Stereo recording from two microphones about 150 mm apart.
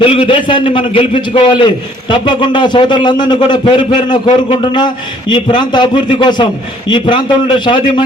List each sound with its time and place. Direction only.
0.0 s a man's voice: 35° left (ahead or behind)